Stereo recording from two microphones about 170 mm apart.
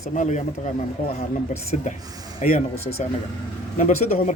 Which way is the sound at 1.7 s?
45° left (ahead or behind).